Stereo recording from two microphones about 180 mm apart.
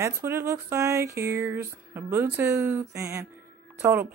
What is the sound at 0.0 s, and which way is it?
Speech, 15° right (ahead or behind).